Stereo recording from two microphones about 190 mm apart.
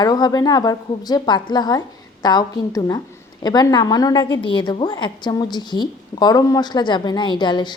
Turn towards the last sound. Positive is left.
turn(degrees=25)  # may be behind; listen again after turning